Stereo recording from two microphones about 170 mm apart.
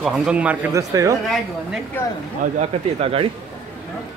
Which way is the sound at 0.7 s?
20° right (ahead or behind).